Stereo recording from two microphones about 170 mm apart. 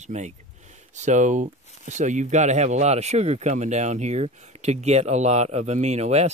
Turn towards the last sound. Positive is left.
turn(degrees=-40)  # may be behind; listen again after turning